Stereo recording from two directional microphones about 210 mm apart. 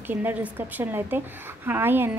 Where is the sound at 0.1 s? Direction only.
10° right (ahead or behind).